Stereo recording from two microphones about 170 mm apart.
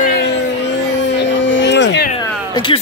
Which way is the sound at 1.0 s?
90° left.